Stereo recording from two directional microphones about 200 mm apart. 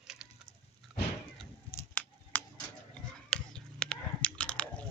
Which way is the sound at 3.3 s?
5° left (ahead or behind).